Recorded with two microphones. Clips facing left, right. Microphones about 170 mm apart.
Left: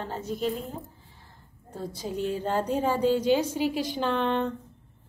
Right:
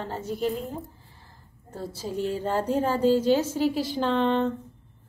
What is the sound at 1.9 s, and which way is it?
A woman's voice, 5° right (ahead or behind).